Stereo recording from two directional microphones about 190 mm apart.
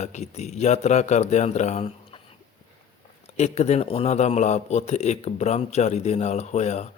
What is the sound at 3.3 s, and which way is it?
A man's voice, 35° left (ahead or behind).